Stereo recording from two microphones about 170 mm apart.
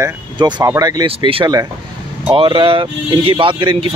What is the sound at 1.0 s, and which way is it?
A man's voice, 35° right (ahead or behind).